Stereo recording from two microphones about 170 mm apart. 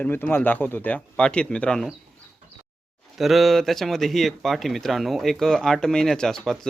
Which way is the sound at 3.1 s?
Centre (ahead or behind).